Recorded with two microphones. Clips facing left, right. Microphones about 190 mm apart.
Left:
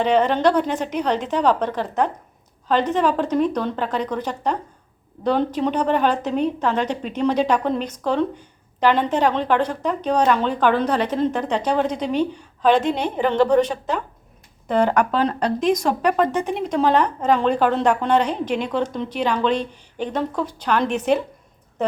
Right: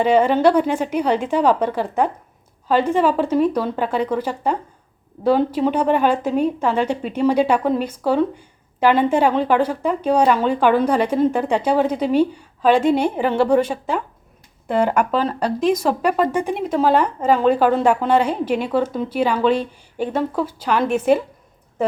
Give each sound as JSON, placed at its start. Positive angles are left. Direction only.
{"t": 0.0, "sound": "a woman's voice", "side_deg": -10}